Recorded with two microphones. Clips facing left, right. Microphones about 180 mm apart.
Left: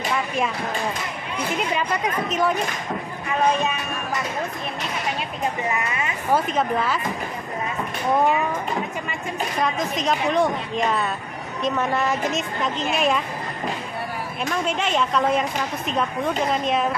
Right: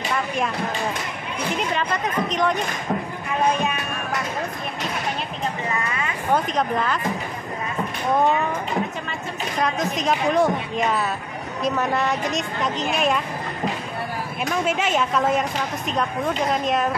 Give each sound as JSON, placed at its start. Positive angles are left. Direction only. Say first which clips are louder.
{"t": 1.7, "sound": "a woman's voice", "louder": "left 1 dB", "side_deg": 5}
{"t": 5.8, "sound": "speech", "louder": "even", "side_deg": 25}
{"t": 6.3, "sound": "a woman's voice", "louder": "left 1 dB", "side_deg": 5}
{"t": 9.6, "sound": "a woman's voice", "louder": "right 2 dB", "side_deg": 0}
{"t": 14.5, "sound": "a woman's voice", "louder": "right 2 dB", "side_deg": -5}
{"t": 16.5, "sound": "a woman's voice", "louder": "even", "side_deg": 0}